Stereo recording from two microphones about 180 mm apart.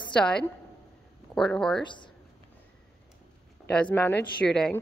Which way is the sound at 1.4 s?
5° left (ahead or behind).